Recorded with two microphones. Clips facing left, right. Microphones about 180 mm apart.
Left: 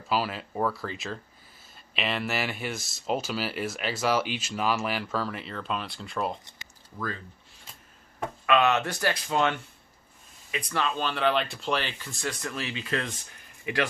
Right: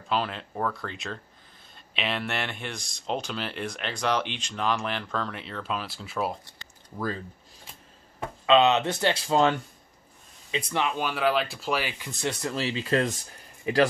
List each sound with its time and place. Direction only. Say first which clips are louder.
0.1 s speech: even; 5° left (ahead or behind)
8.5 s speech: right 3 dB; 20° right (ahead or behind)
10.5 s speech: right 2 dB; 20° right (ahead or behind)
12.1 s speech: right 4 dB; 25° right (ahead or behind)